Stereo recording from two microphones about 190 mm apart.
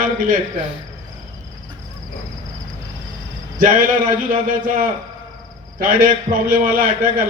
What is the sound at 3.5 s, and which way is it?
A man's voice, 45° right (ahead or behind).